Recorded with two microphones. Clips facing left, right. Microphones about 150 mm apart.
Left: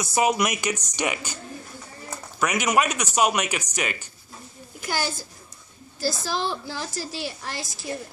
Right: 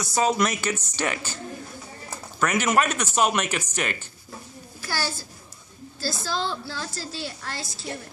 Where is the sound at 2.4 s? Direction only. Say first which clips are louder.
Even; 10° left (ahead or behind).